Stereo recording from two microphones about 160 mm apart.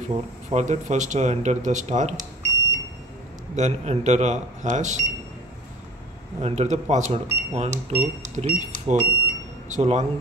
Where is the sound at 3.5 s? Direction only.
45° right (ahead or behind).